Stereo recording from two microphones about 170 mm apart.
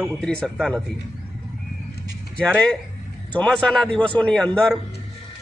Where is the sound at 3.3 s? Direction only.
5° left (ahead or behind).